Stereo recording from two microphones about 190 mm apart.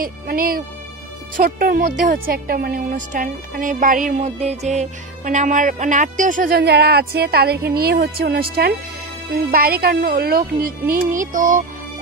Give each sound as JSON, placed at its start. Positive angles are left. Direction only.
{"t": 0.0, "sound": "a woman's voice", "side_deg": -50}